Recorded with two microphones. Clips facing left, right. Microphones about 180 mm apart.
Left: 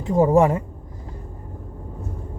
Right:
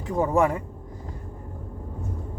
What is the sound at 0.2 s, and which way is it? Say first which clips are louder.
Speech: left 6 dB; 25° left (ahead or behind).